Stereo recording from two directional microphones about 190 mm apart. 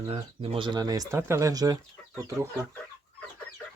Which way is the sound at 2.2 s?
15° right (ahead or behind).